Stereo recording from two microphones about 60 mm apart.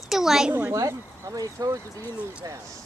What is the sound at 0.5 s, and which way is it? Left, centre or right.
Speech, right.